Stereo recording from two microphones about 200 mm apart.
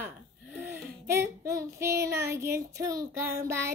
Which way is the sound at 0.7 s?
15° right (ahead or behind).